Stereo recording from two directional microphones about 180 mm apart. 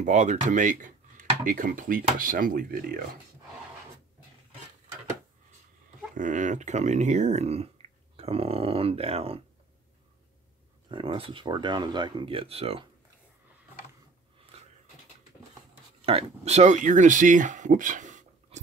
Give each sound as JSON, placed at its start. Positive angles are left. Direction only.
{"t": 0.0, "sound": "speech", "side_deg": -40}
{"t": 6.1, "sound": "speech", "side_deg": -45}
{"t": 10.9, "sound": "speech", "side_deg": -30}
{"t": 16.1, "sound": "speech", "side_deg": -35}